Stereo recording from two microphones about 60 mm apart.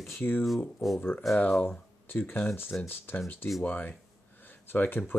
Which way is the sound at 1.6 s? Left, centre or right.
Left.